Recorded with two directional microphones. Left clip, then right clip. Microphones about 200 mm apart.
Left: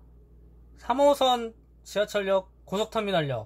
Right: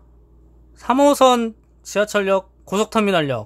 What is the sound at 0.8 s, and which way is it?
Speech, 35° right (ahead or behind).